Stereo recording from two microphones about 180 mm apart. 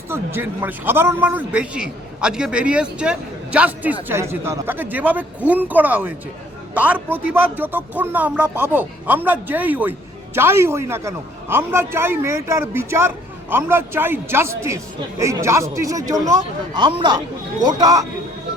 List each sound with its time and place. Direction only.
0.1 s a man's voice: 10° right (ahead or behind)